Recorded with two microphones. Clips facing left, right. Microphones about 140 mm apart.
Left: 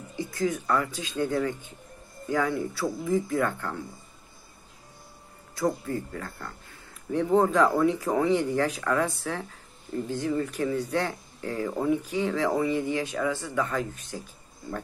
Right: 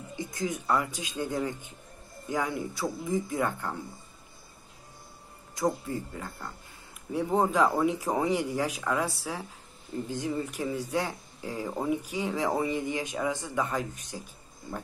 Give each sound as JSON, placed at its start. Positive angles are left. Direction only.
{"t": 0.1, "sound": "speech", "side_deg": -15}
{"t": 5.5, "sound": "speech", "side_deg": -15}